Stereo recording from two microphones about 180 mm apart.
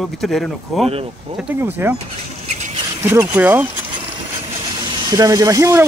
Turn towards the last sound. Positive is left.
turn(degrees=-15)  # may be behind; listen again after turning